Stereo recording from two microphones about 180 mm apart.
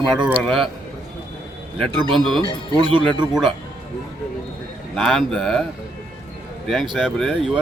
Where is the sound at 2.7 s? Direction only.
25° right (ahead or behind).